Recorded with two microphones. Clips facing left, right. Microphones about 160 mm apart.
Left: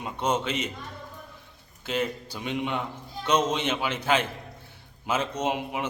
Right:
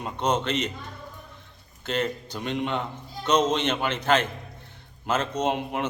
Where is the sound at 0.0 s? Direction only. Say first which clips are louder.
Right 1 dB; 10° left (ahead or behind).